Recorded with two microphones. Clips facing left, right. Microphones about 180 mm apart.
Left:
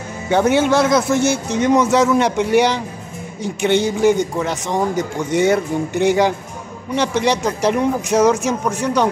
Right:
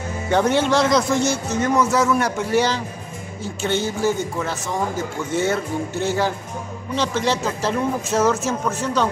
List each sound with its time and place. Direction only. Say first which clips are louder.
0.3 s a man's voice: left 3 dB; 10° left (ahead or behind)